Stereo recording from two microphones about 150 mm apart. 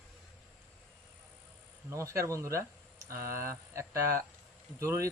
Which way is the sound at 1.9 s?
20° right (ahead or behind).